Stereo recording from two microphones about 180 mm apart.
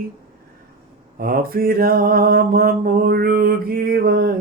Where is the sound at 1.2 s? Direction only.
55° right (ahead or behind).